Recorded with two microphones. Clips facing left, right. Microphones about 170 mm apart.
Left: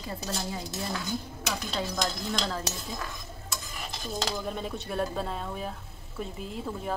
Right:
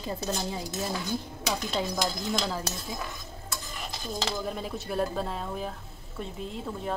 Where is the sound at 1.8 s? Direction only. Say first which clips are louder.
Even; 10° right (ahead or behind).